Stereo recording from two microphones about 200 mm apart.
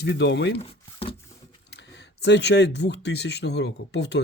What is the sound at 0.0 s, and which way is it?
Speech, 60° left (ahead or behind).